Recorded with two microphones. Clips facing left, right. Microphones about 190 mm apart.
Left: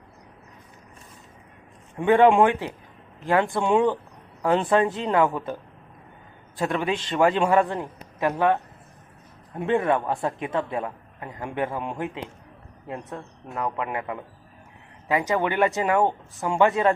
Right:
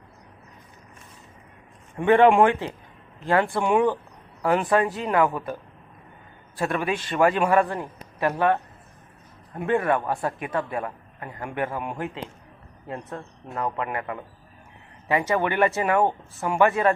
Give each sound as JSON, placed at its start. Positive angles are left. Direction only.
{"t": 2.0, "sound": "a man's voice", "side_deg": 15}
{"t": 6.6, "sound": "a man's voice", "side_deg": 20}
{"t": 9.6, "sound": "a man's voice", "side_deg": 20}
{"t": 10.0, "sound": "speech", "side_deg": 0}
{"t": 10.2, "sound": "a man's voice", "side_deg": 20}
{"t": 13.1, "sound": "speech", "side_deg": 0}
{"t": 13.7, "sound": "a man's voice", "side_deg": 15}